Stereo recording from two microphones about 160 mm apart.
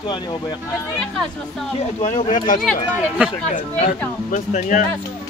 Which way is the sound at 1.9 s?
50° left (ahead or behind).